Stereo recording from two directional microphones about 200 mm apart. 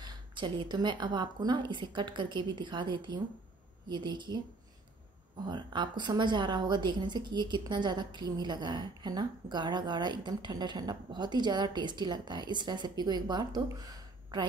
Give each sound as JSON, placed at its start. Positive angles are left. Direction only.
{"t": 0.0, "sound": "speech", "side_deg": -25}
{"t": 5.4, "sound": "speech", "side_deg": -20}